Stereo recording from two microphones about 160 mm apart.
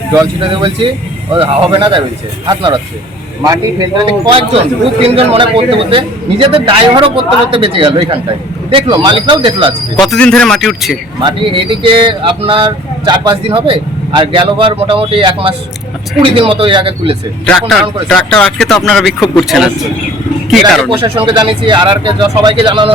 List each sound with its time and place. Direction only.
0.3 s speech: 30° right (ahead or behind)
10.1 s speech: 5° left (ahead or behind)
11.2 s speech: 30° right (ahead or behind)
17.4 s speech: 5° left (ahead or behind)
20.9 s speech: 30° right (ahead or behind)